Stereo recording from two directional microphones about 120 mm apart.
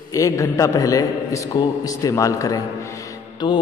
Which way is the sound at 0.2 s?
25° left (ahead or behind).